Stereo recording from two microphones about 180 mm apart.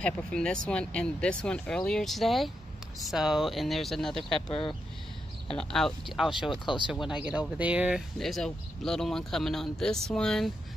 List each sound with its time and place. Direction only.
0.0 s speech: 5° left (ahead or behind)
4.5 s speech: 30° left (ahead or behind)
5.5 s speech: 5° left (ahead or behind)